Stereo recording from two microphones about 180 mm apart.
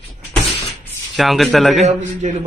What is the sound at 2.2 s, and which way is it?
Speech, 40° right (ahead or behind).